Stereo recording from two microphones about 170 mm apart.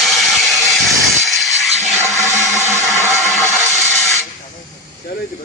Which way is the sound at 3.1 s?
Centre (ahead or behind).